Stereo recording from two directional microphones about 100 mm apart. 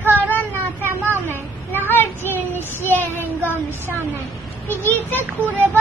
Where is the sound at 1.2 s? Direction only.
20° left (ahead or behind).